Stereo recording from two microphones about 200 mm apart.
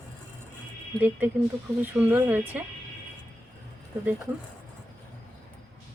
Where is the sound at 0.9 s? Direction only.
10° right (ahead or behind).